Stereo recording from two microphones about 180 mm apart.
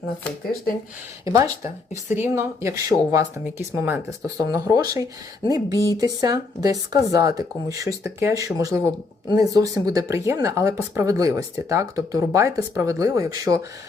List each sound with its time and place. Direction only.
1.2 s speech: 15° right (ahead or behind)
5.7 s speech: 15° left (ahead or behind)
6.0 s speech: 20° right (ahead or behind)